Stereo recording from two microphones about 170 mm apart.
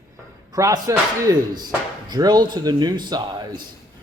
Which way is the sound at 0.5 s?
20° right (ahead or behind).